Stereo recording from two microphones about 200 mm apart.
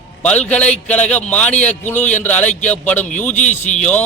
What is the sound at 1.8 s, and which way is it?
A man's voice, 10° left (ahead or behind).